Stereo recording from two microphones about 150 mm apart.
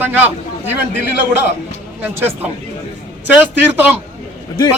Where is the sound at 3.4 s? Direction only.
10° right (ahead or behind).